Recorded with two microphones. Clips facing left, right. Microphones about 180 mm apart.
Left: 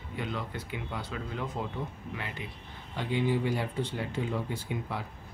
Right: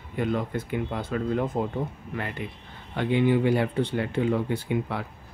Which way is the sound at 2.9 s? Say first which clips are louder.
Right 7 dB; 60° right (ahead or behind).